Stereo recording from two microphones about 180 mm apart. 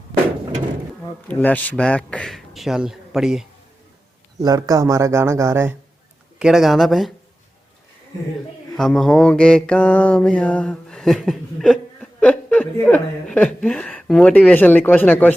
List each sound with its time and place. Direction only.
1.3 s a man's voice: 10° left (ahead or behind)
4.4 s speech: 20° right (ahead or behind)
6.4 s a man's voice: centre (ahead or behind)
8.7 s mantra: centre (ahead or behind)